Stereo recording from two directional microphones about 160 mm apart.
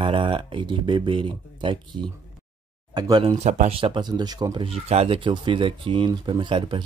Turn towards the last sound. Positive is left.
turn(degrees=-30)  # may be behind; listen again after turning